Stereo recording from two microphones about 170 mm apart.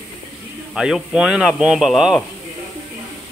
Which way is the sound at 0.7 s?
5° right (ahead or behind).